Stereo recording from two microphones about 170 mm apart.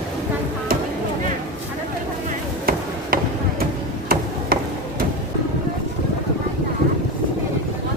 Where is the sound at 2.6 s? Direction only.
60° right (ahead or behind).